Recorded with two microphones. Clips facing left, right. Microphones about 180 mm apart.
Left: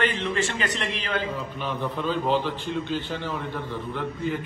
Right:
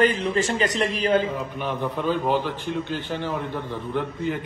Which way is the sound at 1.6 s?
15° right (ahead or behind).